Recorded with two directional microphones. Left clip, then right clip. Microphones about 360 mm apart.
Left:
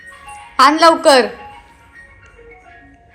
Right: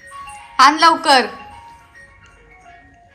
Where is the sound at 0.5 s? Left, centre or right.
Centre.